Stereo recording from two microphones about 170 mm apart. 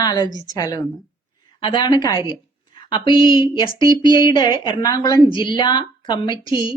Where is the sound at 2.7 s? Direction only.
30° left (ahead or behind).